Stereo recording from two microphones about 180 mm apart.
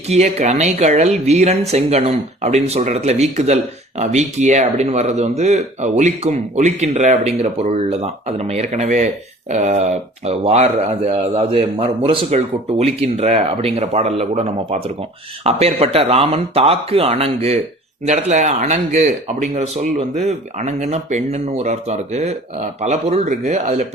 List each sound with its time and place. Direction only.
0.1 s speech: 35° right (ahead or behind)